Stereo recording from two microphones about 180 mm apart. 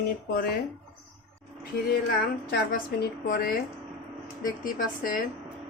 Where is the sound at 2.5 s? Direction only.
55° left (ahead or behind).